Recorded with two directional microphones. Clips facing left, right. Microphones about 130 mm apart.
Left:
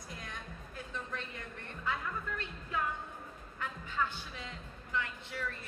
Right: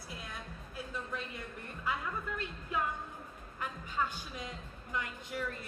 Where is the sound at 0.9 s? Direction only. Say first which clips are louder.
Right 1 dB; 10° right (ahead or behind).